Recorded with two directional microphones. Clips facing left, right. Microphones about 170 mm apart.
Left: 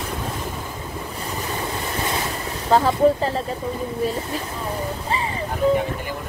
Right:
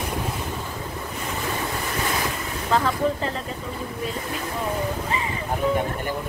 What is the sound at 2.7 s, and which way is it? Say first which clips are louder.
Speech: left 6 dB; 35° left (ahead or behind).